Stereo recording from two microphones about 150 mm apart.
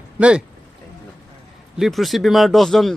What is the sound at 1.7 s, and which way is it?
Speech, centre (ahead or behind).